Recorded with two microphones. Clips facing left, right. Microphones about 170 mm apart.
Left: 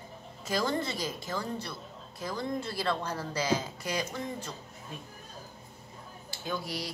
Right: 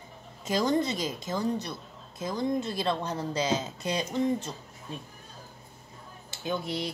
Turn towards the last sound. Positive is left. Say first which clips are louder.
# right 4 dB
turn(degrees=-25)  # may be behind; listen again after turning